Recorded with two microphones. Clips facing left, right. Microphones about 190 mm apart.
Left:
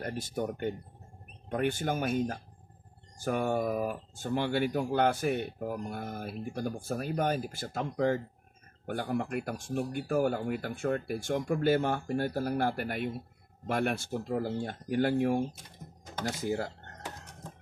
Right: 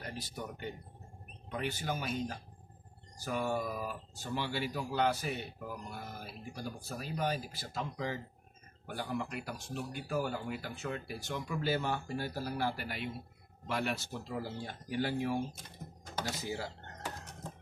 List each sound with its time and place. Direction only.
0.0 s speech: 50° left (ahead or behind)